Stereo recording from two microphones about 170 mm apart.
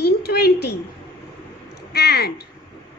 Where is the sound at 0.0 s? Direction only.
70° left (ahead or behind).